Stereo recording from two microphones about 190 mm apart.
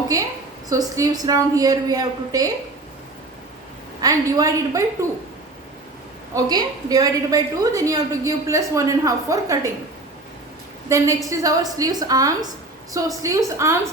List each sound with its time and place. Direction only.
0.1 s a woman's voice: 20° right (ahead or behind)
4.0 s a woman's voice: 20° right (ahead or behind)
6.3 s a woman's voice: 20° right (ahead or behind)
10.8 s a woman's voice: 15° right (ahead or behind)